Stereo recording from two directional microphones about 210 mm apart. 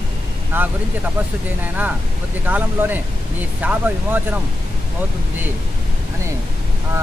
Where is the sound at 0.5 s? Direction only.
10° right (ahead or behind).